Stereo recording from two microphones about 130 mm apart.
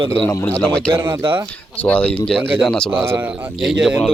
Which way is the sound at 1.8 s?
10° left (ahead or behind).